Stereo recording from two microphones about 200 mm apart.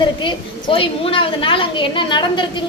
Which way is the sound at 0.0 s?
25° left (ahead or behind).